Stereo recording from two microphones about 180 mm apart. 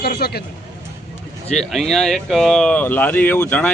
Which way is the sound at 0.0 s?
60° left (ahead or behind).